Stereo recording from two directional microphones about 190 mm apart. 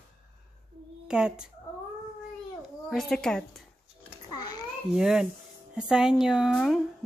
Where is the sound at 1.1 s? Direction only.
5° right (ahead or behind).